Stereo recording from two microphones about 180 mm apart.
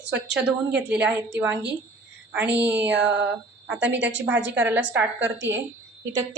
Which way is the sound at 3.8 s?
75° right (ahead or behind).